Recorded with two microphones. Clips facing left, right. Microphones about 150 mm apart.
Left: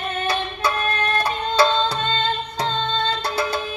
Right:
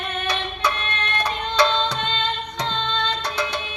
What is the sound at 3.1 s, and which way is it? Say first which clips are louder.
Music: left 3 dB; 30° left (ahead or behind).